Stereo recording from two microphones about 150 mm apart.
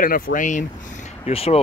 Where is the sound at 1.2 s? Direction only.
40° left (ahead or behind).